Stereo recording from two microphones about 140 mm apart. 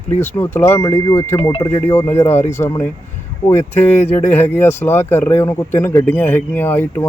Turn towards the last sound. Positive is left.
turn(degrees=15)  # may be behind; listen again after turning